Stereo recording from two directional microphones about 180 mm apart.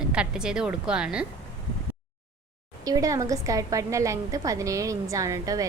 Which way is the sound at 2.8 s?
20° right (ahead or behind).